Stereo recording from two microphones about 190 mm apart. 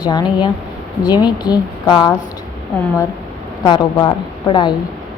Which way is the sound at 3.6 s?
20° left (ahead or behind).